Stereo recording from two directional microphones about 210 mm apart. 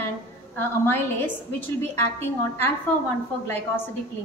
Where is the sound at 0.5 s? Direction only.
10° left (ahead or behind).